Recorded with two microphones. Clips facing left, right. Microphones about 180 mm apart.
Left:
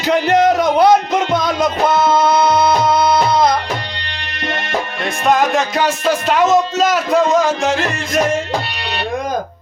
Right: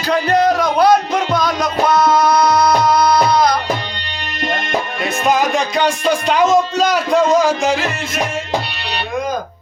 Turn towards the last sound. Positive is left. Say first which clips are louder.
# right 1 dB
turn(degrees=0)  # may be behind; listen again after turning